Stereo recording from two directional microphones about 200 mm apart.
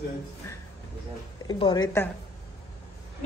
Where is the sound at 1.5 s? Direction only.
25° left (ahead or behind).